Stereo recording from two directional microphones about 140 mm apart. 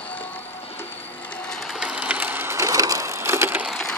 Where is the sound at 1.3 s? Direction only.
5° left (ahead or behind); by 3.7 s 15° right (ahead or behind).